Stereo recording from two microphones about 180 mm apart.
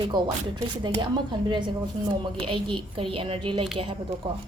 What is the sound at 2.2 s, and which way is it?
Speech, 30° right (ahead or behind).